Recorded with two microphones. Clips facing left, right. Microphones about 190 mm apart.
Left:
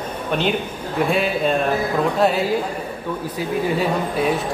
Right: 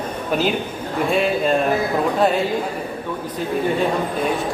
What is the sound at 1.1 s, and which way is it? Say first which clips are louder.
A woman's voice: right 3 dB; centre (ahead or behind).